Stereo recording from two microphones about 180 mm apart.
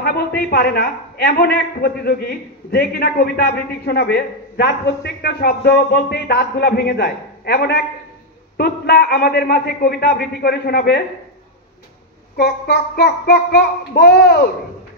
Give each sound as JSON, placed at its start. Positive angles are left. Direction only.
{"t": 0.0, "sound": "a man's voice", "side_deg": 60}
{"t": 12.4, "sound": "a man's voice", "side_deg": 65}